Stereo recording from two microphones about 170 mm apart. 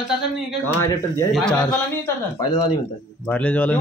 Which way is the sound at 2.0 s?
20° left (ahead or behind).